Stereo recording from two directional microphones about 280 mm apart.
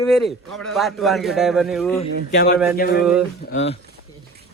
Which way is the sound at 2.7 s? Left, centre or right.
Left.